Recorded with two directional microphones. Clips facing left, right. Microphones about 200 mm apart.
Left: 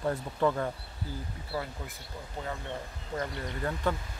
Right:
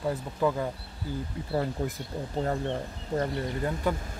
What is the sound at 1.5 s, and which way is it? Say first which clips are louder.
Speech: right 8 dB; 45° right (ahead or behind).